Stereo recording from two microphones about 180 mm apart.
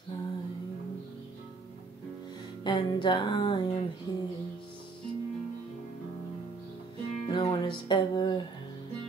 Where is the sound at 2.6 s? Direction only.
25° left (ahead or behind).